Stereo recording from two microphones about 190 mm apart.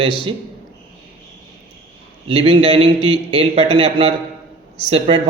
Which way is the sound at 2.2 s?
30° right (ahead or behind).